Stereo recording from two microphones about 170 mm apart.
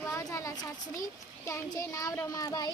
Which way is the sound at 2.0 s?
20° left (ahead or behind).